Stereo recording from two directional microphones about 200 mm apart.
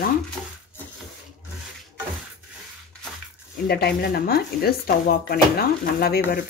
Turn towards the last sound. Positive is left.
turn(degrees=50)  # may be behind; listen again after turning